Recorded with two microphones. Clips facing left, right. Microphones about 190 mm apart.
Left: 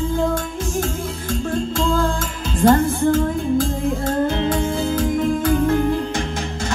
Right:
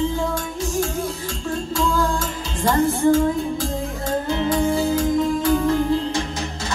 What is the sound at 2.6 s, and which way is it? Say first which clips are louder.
Music: left 4 dB; 50° left (ahead or behind).